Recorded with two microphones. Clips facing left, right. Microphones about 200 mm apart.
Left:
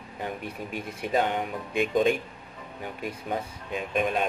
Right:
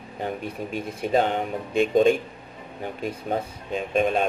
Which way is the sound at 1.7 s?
30° right (ahead or behind).